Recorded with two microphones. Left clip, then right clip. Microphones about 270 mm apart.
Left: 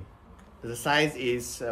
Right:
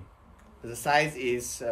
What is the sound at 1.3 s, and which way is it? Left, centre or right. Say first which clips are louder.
Speech: even; left.